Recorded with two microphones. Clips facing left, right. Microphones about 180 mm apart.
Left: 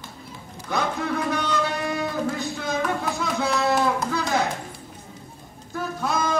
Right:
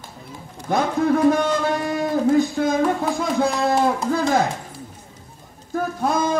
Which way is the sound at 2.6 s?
50° right (ahead or behind).